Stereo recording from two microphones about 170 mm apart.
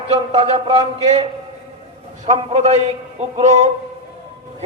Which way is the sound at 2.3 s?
40° right (ahead or behind).